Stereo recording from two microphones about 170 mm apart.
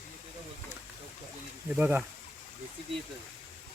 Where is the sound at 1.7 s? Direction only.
10° right (ahead or behind).